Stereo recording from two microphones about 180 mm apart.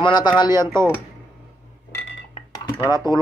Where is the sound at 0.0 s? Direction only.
25° left (ahead or behind).